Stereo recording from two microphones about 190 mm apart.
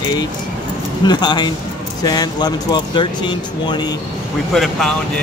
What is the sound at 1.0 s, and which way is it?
Speech, 20° left (ahead or behind).